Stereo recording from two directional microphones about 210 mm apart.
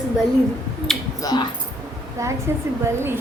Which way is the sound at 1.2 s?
15° left (ahead or behind).